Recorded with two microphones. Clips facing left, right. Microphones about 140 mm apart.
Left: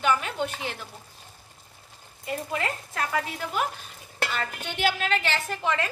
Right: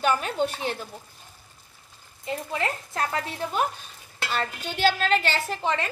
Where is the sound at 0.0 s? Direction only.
35° right (ahead or behind).